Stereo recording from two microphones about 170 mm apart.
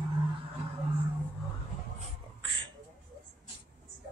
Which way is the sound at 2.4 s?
30° right (ahead or behind).